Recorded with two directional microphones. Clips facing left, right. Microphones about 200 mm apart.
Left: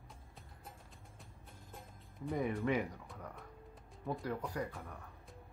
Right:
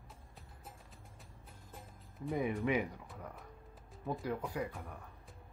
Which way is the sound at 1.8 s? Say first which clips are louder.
Right 1 dB; centre (ahead or behind).